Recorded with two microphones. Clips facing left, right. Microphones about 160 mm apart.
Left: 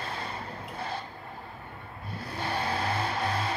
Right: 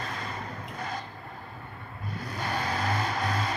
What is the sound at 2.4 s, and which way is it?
Vehicle, 30° left (ahead or behind).